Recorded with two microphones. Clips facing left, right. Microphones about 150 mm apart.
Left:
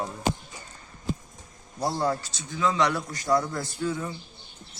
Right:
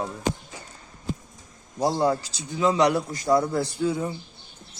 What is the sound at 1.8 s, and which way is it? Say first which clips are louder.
Speech: right 4 dB; 15° right (ahead or behind).